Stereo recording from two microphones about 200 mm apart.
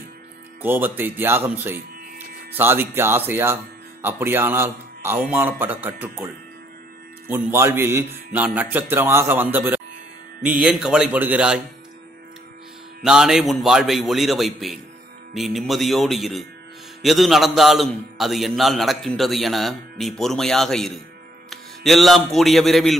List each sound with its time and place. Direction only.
0.6 s a man's voice: 10° right (ahead or behind)
13.0 s a man's voice: 5° right (ahead or behind)